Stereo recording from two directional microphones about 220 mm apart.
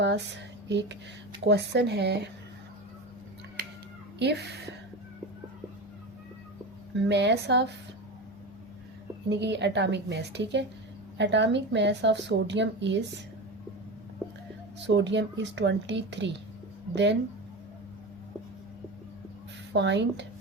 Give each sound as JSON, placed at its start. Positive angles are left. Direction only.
{"t": 0.0, "sound": "a woman's voice", "side_deg": -55}
{"t": 4.2, "sound": "a woman's voice", "side_deg": -50}
{"t": 7.1, "sound": "a woman's voice", "side_deg": -50}
{"t": 9.3, "sound": "a woman's voice", "side_deg": -50}
{"t": 14.8, "sound": "a woman's voice", "side_deg": -55}
{"t": 19.7, "sound": "a woman's voice", "side_deg": -55}